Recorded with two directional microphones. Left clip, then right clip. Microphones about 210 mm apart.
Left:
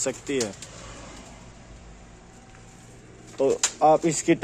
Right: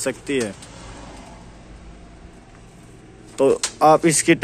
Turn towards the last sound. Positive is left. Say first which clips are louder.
# right 6 dB
turn(degrees=5)  # may be behind; listen again after turning